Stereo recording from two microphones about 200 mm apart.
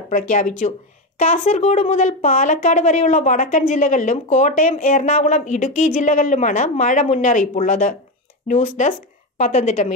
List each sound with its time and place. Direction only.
0.3 s speech: 40° left (ahead or behind)